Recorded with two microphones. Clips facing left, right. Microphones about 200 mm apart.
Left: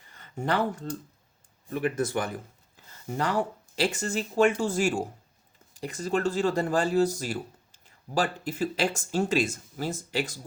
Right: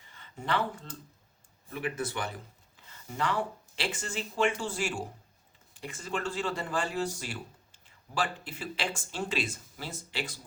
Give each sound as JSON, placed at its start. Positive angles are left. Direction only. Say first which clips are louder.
{"t": 0.2, "sound": "speech", "louder": "left 4 dB", "side_deg": 45}